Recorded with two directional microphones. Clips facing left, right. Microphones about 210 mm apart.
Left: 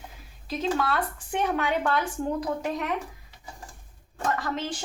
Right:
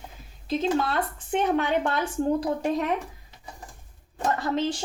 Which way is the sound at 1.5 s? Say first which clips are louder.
Right 1 dB; 25° right (ahead or behind).